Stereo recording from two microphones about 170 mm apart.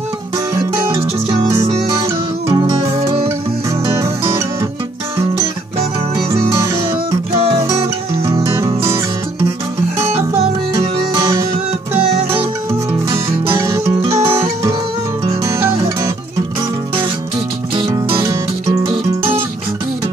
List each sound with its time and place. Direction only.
0.9 s music: 20° right (ahead or behind)
1.6 s music: 40° right (ahead or behind)
2.4 s music: 20° right (ahead or behind)
6.3 s music: 15° right (ahead or behind)
8.5 s music: 15° right (ahead or behind)
17.7 s music: 30° right (ahead or behind)